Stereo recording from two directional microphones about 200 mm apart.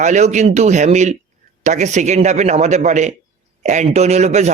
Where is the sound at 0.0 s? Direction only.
35° right (ahead or behind).